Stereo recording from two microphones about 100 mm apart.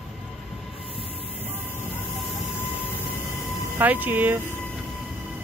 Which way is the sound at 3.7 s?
15° right (ahead or behind).